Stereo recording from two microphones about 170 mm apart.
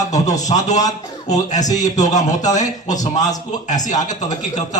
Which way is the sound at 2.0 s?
45° left (ahead or behind).